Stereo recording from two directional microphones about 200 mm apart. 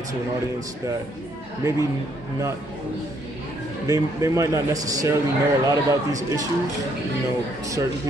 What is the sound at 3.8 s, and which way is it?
A man's voice, 15° right (ahead or behind).